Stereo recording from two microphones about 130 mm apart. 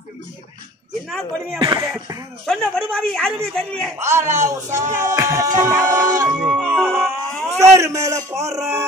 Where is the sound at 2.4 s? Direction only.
Centre (ahead or behind).